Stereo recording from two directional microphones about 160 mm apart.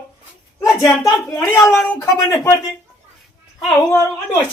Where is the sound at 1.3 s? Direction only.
20° left (ahead or behind).